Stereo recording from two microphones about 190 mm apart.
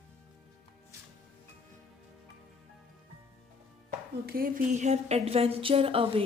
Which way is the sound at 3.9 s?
50° right (ahead or behind).